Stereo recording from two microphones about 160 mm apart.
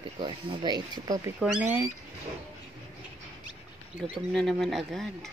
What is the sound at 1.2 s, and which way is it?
Speech, 10° right (ahead or behind).